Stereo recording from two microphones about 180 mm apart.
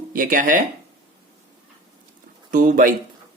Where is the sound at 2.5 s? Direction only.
50° right (ahead or behind).